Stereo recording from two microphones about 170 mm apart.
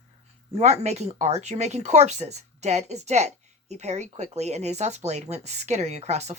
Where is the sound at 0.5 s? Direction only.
40° right (ahead or behind).